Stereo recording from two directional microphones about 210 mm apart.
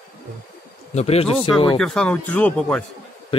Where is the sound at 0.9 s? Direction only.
30° left (ahead or behind).